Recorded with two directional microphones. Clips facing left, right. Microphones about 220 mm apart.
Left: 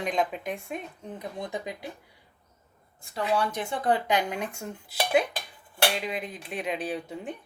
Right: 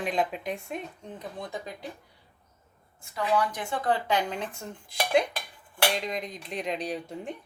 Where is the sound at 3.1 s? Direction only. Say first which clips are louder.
Even; 30° left (ahead or behind).